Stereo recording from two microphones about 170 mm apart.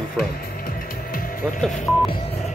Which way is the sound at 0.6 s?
55° left (ahead or behind).